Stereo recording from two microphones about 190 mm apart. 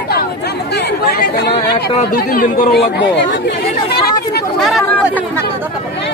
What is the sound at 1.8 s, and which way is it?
Speech, 55° left (ahead or behind).